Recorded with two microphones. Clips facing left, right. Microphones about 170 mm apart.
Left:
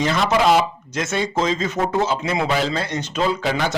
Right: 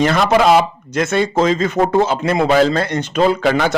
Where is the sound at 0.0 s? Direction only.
60° right (ahead or behind).